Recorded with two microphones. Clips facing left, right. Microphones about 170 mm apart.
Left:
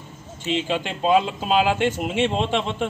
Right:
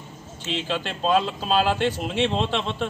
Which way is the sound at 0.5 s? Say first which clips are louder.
Left 4 dB; 15° left (ahead or behind).